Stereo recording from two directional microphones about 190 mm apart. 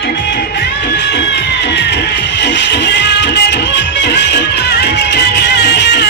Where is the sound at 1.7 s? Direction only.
65° left (ahead or behind).